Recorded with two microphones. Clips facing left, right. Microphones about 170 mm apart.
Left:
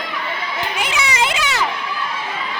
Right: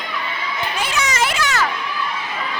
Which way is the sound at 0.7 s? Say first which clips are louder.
Even; 15° left (ahead or behind).